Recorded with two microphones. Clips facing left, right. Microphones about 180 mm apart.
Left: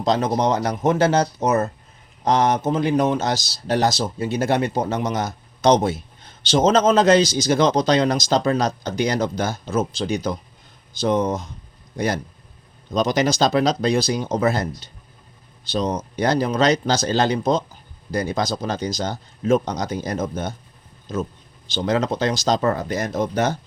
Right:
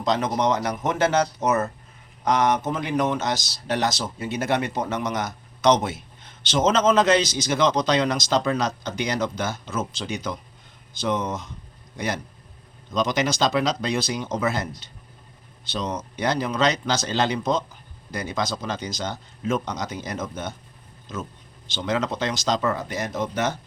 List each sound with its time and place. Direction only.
0.0 s speech: 30° left (ahead or behind)
21.8 s speech: 35° left (ahead or behind)